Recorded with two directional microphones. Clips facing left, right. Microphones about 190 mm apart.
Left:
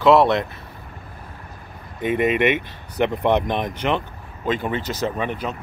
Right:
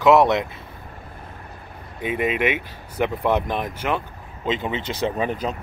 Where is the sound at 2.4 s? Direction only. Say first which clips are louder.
Left 3 dB; 5° right (ahead or behind).